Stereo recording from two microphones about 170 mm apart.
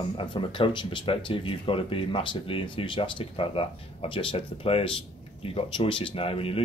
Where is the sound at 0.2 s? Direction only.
30° left (ahead or behind).